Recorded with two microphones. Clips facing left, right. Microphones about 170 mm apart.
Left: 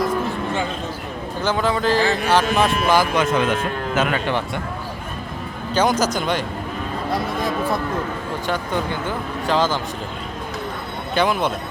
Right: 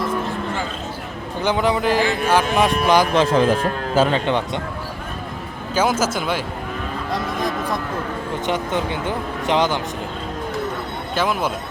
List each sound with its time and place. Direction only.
1.4 s a man's voice: 15° right (ahead or behind)
3.2 s speech: 35° right (ahead or behind)
5.7 s speech: 5° right (ahead or behind)
8.4 s speech: 20° right (ahead or behind)
11.1 s speech: centre (ahead or behind)